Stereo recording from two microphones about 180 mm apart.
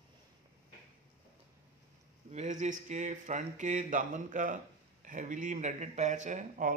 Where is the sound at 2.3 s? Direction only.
40° right (ahead or behind).